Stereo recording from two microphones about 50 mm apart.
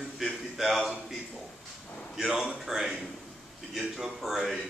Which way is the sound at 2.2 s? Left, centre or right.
Centre.